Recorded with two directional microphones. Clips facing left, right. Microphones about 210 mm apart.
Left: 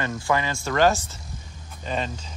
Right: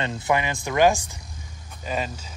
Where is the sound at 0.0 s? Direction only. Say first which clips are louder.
Right 1 dB; 20° right (ahead or behind).